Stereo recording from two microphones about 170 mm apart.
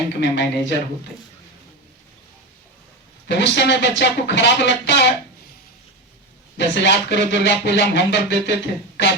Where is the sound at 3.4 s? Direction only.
90° left.